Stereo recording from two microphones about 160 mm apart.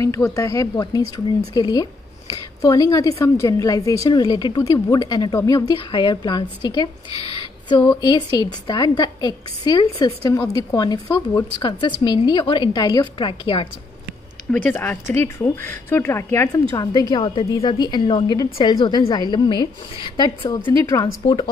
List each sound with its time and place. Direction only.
0.0 s speech: 20° left (ahead or behind)
7.3 s a sound: 30° left (ahead or behind)
8.0 s speech: 25° left (ahead or behind)
14.5 s speech: 10° left (ahead or behind)